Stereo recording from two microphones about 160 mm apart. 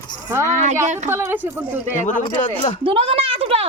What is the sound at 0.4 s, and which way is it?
Speech, 50° right (ahead or behind).